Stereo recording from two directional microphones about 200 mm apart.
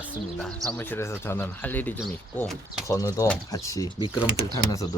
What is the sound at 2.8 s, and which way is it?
Speech, 15° left (ahead or behind).